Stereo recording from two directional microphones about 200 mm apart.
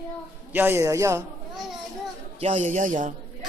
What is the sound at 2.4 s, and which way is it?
Speech, 35° right (ahead or behind).